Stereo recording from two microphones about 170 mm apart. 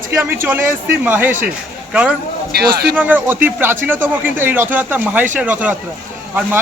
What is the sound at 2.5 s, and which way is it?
Speech, 70° right (ahead or behind).